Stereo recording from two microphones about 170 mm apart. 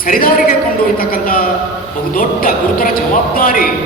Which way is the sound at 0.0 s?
55° left (ahead or behind).